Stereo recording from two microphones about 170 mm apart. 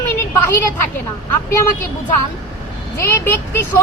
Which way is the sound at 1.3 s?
15° left (ahead or behind).